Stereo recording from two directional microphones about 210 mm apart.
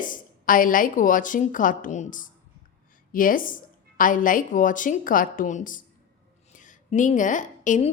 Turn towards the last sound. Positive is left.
turn(degrees=35)  # may be behind; listen again after turning